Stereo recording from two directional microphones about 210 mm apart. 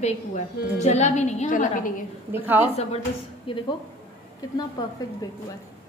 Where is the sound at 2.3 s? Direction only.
10° right (ahead or behind).